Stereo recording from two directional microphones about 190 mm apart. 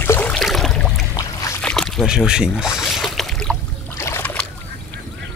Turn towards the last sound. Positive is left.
turn(degrees=10)  # may be behind; listen again after turning